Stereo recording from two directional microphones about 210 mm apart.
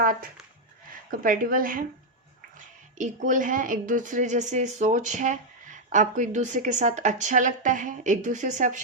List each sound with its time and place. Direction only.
0.0 s speech: 40° right (ahead or behind)